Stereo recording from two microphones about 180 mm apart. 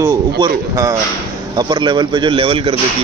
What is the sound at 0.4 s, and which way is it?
Speech, 20° right (ahead or behind).